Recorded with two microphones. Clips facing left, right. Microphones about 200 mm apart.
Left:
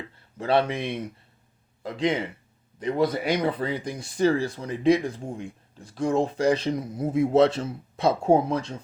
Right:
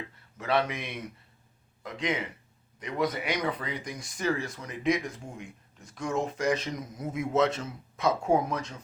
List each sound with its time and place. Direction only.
0.3 s speech: 30° left (ahead or behind)